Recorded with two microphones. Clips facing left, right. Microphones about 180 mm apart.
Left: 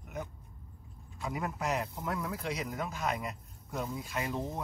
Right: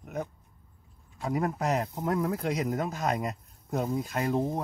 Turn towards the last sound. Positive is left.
turn(degrees=-40)  # may be behind; listen again after turning